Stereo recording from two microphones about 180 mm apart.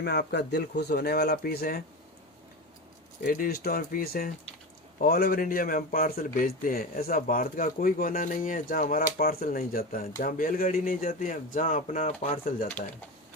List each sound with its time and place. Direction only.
0.0 s speech: 65° left (ahead or behind)
3.2 s speech: 50° left (ahead or behind)